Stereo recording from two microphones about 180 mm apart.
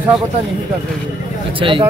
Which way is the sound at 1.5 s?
30° right (ahead or behind).